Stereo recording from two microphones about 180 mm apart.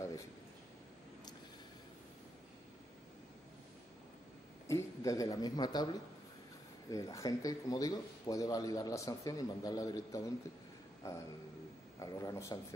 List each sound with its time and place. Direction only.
4.6 s speech: 15° left (ahead or behind)
6.9 s a man's voice: 20° left (ahead or behind)